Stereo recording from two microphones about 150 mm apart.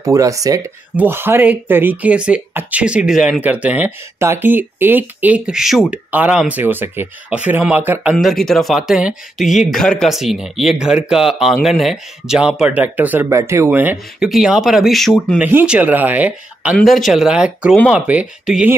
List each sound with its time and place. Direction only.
0.0 s speech: 20° right (ahead or behind)
8.2 s speech: centre (ahead or behind)
16.7 s speech: centre (ahead or behind)